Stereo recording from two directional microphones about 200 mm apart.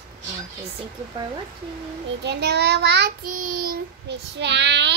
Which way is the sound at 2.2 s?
55° right (ahead or behind).